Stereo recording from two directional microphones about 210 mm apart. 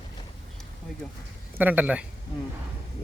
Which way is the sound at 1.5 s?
10° right (ahead or behind).